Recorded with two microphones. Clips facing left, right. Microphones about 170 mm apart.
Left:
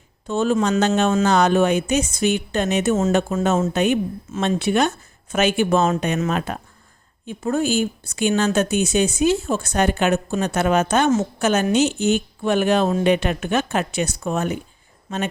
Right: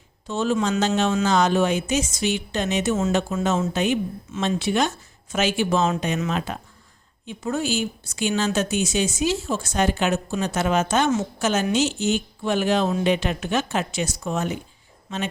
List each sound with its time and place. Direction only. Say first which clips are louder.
0.3 s a woman's voice: left 3 dB; 55° left (ahead or behind)